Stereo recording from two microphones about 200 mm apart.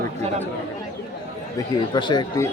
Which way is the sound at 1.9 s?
20° left (ahead or behind).